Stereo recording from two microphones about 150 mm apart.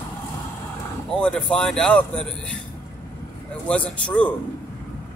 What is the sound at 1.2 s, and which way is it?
Speech, 5° left (ahead or behind).